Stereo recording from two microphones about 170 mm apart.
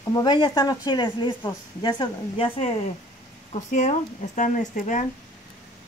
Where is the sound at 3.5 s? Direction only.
45° left (ahead or behind).